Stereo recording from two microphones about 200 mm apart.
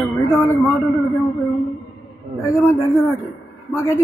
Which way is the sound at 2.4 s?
15° left (ahead or behind).